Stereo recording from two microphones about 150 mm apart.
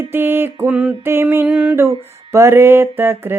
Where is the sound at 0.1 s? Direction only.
15° right (ahead or behind).